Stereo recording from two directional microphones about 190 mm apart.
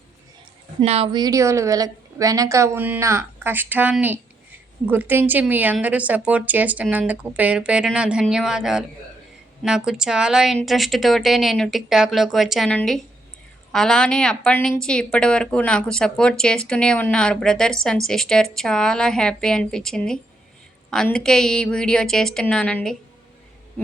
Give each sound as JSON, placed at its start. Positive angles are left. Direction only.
{"t": 0.8, "sound": "a woman's voice", "side_deg": -30}